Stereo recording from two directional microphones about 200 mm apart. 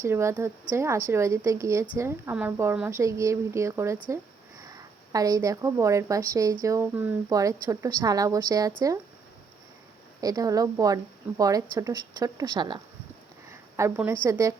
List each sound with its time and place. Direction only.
0.0 s a woman's voice: 15° right (ahead or behind)
10.2 s a woman's voice: 20° right (ahead or behind)
13.5 s a sound: 15° right (ahead or behind)
14.3 s a woman's voice: 15° right (ahead or behind)